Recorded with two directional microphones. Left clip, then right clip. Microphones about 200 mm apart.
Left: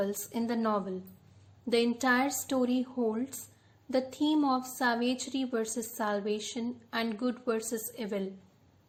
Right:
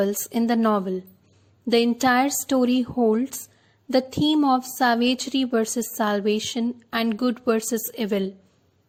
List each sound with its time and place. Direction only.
0.0 s a woman's voice: 40° right (ahead or behind)